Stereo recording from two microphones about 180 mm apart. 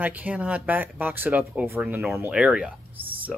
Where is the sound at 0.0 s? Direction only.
10° right (ahead or behind).